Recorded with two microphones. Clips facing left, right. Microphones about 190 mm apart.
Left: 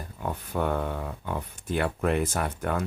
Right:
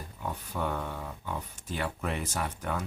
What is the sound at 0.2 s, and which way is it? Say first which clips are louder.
Speech: left 5 dB; 55° left (ahead or behind).